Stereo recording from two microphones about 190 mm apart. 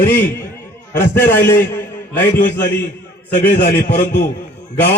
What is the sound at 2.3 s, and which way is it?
A man's voice, 50° left (ahead or behind).